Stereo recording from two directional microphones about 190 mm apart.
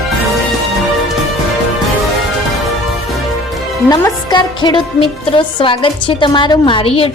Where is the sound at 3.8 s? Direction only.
20° left (ahead or behind).